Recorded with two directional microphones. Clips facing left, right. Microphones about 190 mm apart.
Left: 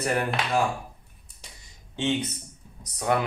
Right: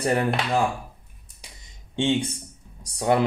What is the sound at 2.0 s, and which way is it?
Speech, 30° right (ahead or behind).